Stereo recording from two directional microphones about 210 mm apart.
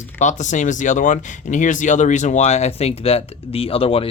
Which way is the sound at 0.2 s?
35° left (ahead or behind).